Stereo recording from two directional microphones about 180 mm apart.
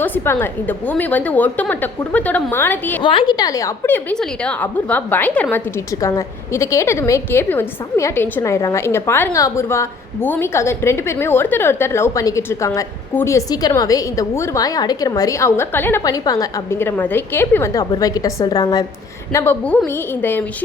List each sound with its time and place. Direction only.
0.0 s a woman's voice: 10° left (ahead or behind)
3.0 s a woman's voice: 25° left (ahead or behind); by 20.4 s 10° left (ahead or behind)